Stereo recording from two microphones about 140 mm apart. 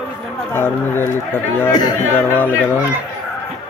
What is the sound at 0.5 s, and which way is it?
Speech, 15° left (ahead or behind).